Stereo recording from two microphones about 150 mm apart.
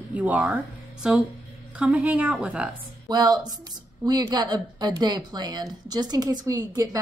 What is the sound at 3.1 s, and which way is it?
A woman's voice, 25° right (ahead or behind).